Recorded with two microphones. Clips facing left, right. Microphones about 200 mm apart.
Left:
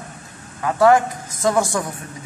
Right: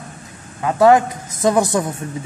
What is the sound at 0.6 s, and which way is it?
Speech, 20° right (ahead or behind).